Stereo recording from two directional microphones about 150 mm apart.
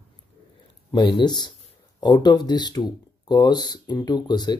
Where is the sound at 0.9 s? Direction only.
30° left (ahead or behind).